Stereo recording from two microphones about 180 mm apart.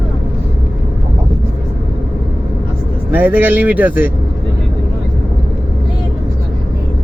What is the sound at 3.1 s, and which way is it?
Speech, 10° right (ahead or behind).